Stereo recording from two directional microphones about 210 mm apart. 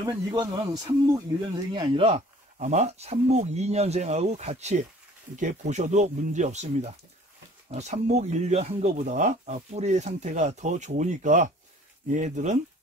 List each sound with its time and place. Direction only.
0.0 s speech: 15° right (ahead or behind); by 12.5 s 35° right (ahead or behind)